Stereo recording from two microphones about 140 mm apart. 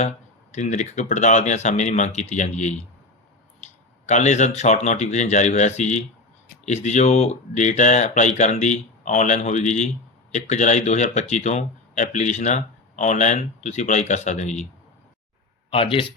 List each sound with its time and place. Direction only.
0.5 s speech: 55° left (ahead or behind)
4.1 s speech: 55° left (ahead or behind)
15.7 s speech: 40° left (ahead or behind)